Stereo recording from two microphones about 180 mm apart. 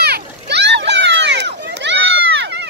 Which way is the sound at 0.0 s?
65° right (ahead or behind).